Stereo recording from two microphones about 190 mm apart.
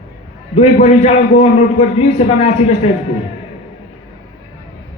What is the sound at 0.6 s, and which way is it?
A man's voice, 35° left (ahead or behind).